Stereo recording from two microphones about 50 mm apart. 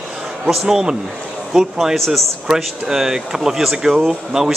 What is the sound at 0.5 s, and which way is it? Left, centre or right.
A man's voice, centre.